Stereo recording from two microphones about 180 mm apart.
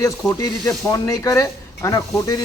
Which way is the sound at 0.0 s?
20° left (ahead or behind).